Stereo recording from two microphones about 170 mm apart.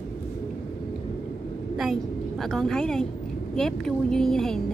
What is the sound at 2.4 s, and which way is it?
A woman's voice, centre (ahead or behind).